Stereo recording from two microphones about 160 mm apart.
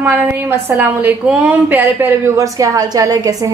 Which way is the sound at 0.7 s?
10° right (ahead or behind).